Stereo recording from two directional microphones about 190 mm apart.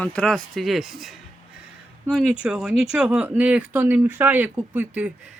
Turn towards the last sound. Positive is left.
turn(degrees=-10)  # may be behind; listen again after turning